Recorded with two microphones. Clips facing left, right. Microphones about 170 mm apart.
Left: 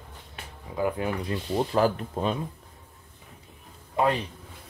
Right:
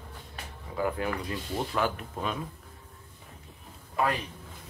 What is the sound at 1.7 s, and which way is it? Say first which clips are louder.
Speech: left 7 dB; 35° left (ahead or behind).